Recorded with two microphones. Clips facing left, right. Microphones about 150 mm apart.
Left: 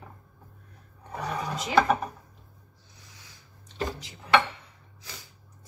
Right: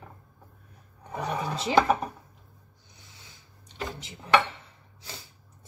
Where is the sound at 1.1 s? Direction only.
25° right (ahead or behind).